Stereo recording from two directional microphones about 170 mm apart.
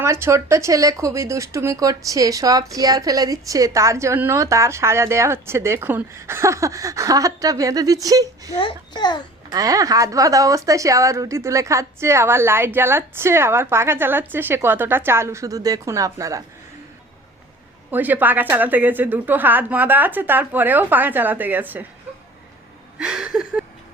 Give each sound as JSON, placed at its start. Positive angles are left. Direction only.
{"t": 0.0, "sound": "speech", "side_deg": -15}
{"t": 8.5, "sound": "a child's voice", "side_deg": 30}
{"t": 9.5, "sound": "a woman's voice", "side_deg": -20}
{"t": 17.9, "sound": "a woman's voice", "side_deg": -10}
{"t": 23.0, "sound": "a sound", "side_deg": -5}